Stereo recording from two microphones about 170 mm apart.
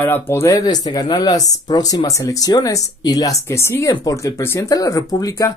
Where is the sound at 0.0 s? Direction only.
10° left (ahead or behind).